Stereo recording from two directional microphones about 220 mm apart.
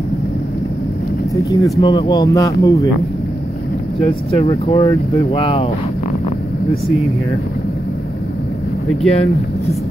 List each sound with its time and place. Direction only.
1.3 s speech: 15° left (ahead or behind)
4.0 s speech: 25° left (ahead or behind)
9.1 s speech: 30° left (ahead or behind)